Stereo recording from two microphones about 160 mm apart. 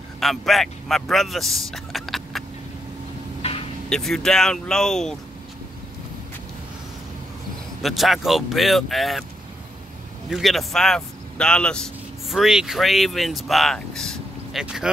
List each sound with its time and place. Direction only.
0.2 s speech: centre (ahead or behind)
3.4 s vehicle: 40° left (ahead or behind)
3.9 s speech: 5° left (ahead or behind)
7.8 s speech: centre (ahead or behind)
10.3 s speech: centre (ahead or behind)